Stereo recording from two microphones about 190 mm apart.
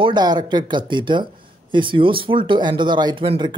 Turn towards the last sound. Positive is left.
turn(degrees=-25)  # may be behind; listen again after turning